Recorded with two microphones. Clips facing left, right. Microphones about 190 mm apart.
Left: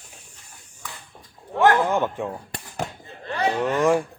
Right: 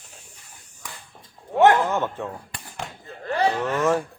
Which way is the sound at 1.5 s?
20° right (ahead or behind).